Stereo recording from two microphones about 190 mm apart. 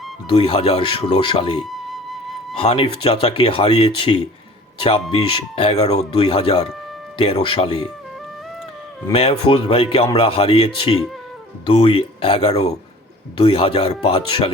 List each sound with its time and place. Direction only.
0.3 s speech: 30° left (ahead or behind)
2.6 s speech: 30° left (ahead or behind)
9.5 s speech: 30° left (ahead or behind)